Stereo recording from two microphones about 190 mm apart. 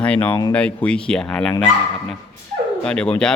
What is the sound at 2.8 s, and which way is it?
Speech, 5° left (ahead or behind).